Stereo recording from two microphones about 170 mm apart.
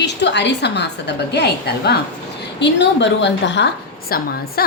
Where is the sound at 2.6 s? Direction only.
90° left.